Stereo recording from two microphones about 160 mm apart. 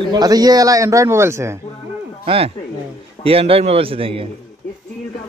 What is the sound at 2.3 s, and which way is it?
Speech, 30° right (ahead or behind).